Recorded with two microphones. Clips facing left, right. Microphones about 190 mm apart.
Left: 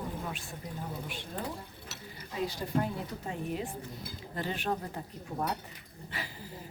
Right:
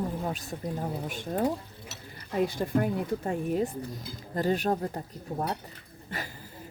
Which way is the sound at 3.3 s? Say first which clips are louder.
Right 6 dB; 45° right (ahead or behind).